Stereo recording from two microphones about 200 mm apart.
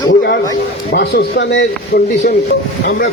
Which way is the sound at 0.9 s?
55° left (ahead or behind).